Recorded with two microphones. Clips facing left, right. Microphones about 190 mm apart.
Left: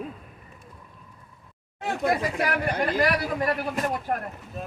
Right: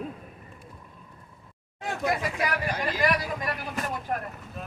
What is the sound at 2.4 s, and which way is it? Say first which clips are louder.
Speech: left 4 dB; 55° left (ahead or behind).